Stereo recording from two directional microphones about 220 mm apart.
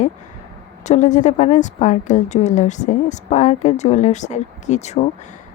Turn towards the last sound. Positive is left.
turn(degrees=30)  # may be behind; listen again after turning